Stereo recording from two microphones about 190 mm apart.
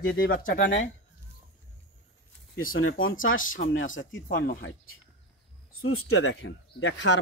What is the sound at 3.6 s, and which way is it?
Speech, 55° left (ahead or behind).